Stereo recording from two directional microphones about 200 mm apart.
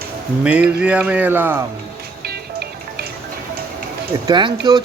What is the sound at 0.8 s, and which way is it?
Speech, 5° right (ahead or behind).